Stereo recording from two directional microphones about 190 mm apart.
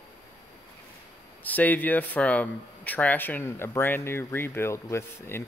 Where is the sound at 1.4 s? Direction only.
10° left (ahead or behind).